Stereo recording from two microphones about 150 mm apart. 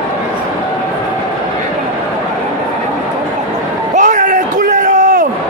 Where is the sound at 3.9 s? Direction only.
55° right (ahead or behind).